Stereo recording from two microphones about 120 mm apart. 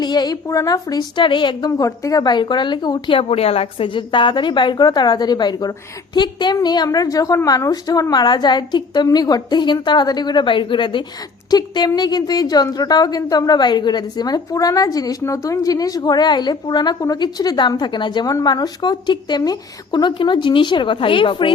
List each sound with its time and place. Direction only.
0.0 s a woman's voice: 35° left (ahead or behind)
1.8 s a woman's voice: 30° left (ahead or behind)
3.2 s a woman's voice: 55° left (ahead or behind)